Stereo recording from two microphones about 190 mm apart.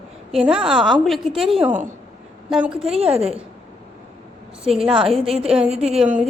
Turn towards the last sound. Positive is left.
turn(degrees=-5)  # may be behind; listen again after turning